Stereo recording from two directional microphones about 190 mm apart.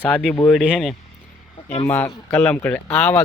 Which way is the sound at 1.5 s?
25° left (ahead or behind).